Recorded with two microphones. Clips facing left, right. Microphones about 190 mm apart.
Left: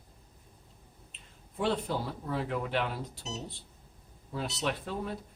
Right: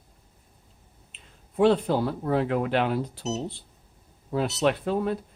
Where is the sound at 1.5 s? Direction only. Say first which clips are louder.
Right 10 dB; 75° right (ahead or behind).